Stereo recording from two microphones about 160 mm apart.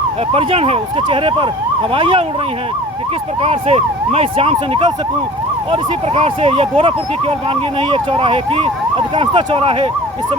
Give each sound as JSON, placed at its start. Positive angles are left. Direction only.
{"t": 0.3, "sound": "speech", "side_deg": -40}
{"t": 3.4, "sound": "speech", "side_deg": -40}